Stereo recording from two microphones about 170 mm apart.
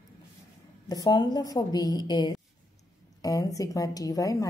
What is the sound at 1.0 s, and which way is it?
A woman's voice, 25° left (ahead or behind).